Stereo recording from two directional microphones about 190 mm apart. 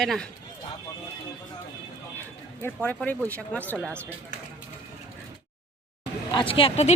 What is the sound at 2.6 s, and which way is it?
Speech, 10° left (ahead or behind).